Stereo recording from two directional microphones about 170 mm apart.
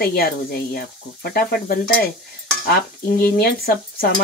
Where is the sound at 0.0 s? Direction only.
65° left (ahead or behind).